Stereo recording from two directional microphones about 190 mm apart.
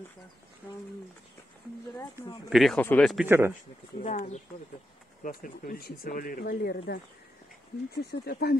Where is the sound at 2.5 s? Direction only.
Centre (ahead or behind).